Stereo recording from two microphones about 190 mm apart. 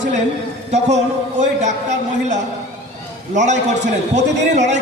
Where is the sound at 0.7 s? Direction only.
35° right (ahead or behind).